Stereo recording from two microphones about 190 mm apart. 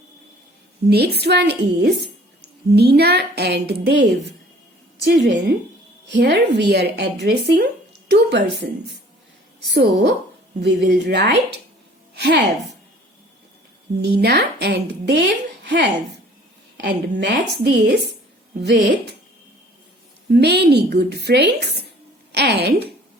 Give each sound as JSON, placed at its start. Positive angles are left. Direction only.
{"t": 0.9, "sound": "a woman's voice", "side_deg": -55}
{"t": 12.1, "sound": "music", "side_deg": -65}
{"t": 14.0, "sound": "a woman's voice", "side_deg": -60}
{"t": 20.3, "sound": "speech", "side_deg": -60}